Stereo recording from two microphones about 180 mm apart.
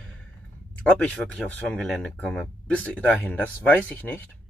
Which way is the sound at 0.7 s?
5° left (ahead or behind).